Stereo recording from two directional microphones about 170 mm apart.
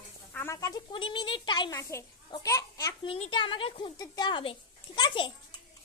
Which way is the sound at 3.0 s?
35° left (ahead or behind).